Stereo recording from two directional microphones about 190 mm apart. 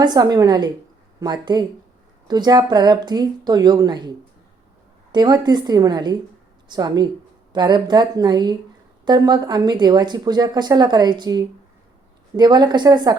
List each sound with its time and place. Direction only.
0.0 s speech: 20° right (ahead or behind)
5.1 s speech: 20° right (ahead or behind)